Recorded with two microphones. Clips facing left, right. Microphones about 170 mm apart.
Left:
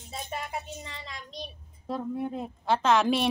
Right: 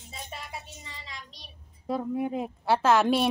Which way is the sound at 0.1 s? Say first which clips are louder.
Left 6 dB; 50° left (ahead or behind).